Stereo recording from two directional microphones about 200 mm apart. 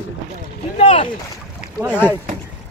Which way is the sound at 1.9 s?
10° left (ahead or behind).